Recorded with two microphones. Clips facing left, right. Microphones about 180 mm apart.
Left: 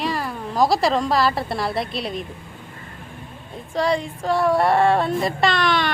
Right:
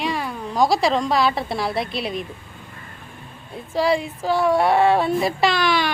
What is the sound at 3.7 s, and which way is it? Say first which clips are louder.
Female singing: right 1 dB; 5° right (ahead or behind).